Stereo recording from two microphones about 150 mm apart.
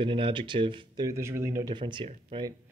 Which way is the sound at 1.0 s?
20° right (ahead or behind).